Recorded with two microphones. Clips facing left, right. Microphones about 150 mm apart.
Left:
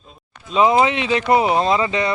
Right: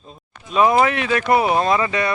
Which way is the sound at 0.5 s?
20° left (ahead or behind).